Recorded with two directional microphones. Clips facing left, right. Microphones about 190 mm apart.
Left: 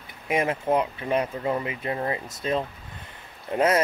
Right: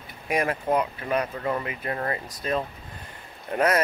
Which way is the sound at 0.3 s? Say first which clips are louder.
Left 1 dB; 20° left (ahead or behind).